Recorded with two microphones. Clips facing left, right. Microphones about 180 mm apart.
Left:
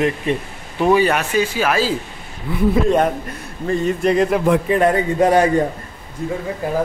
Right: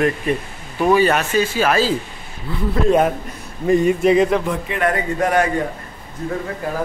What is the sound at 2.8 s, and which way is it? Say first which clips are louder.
A man's voice: right 1 dB; 5° right (ahead or behind).